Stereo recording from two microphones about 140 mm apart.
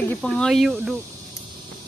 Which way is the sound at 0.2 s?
Centre (ahead or behind).